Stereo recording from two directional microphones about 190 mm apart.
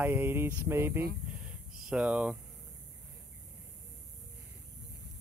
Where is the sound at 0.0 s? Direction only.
10° right (ahead or behind).